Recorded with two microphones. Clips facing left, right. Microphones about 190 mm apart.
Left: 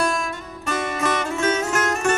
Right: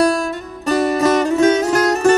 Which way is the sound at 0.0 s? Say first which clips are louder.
Right 8 dB; 35° right (ahead or behind).